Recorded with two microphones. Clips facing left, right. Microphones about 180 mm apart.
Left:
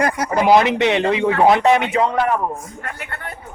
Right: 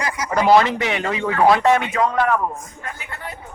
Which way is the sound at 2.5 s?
10° left (ahead or behind).